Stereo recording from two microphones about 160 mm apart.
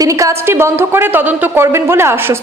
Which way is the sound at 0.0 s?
20° right (ahead or behind).